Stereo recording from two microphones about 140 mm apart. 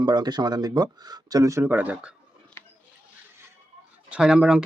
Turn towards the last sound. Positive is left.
turn(degrees=-5)  # may be behind; listen again after turning